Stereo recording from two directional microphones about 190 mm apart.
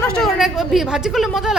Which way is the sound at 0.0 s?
5° left (ahead or behind).